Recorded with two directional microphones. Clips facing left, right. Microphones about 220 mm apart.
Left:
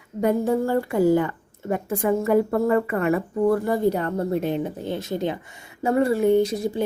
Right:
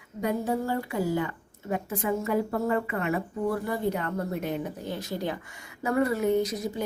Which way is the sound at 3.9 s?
30° left (ahead or behind).